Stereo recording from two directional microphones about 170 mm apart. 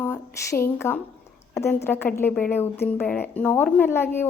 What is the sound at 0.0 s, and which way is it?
Speech, 15° left (ahead or behind).